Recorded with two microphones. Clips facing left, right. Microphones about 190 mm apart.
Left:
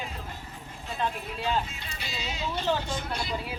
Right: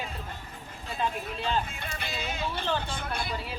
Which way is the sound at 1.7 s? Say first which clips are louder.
Right 3 dB; 55° right (ahead or behind).